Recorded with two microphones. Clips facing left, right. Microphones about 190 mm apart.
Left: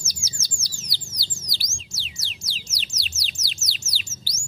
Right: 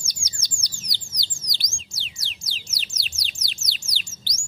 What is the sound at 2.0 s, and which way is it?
Music, centre (ahead or behind).